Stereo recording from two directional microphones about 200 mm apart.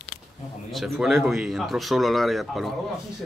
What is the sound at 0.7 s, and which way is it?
Speech, centre (ahead or behind).